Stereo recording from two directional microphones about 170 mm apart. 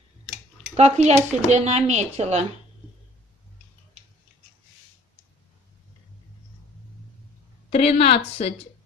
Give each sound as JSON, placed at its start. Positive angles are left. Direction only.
{"t": 0.7, "sound": "speech", "side_deg": -40}
{"t": 7.7, "sound": "a woman's voice", "side_deg": 35}